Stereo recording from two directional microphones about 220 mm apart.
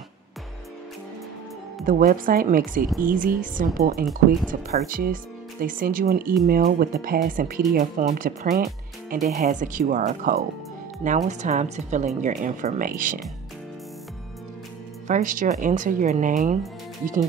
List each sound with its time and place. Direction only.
1.9 s speech: 40° right (ahead or behind)
4.0 s speech: centre (ahead or behind)
4.5 s speech: 40° right (ahead or behind)
15.0 s speech: 35° right (ahead or behind)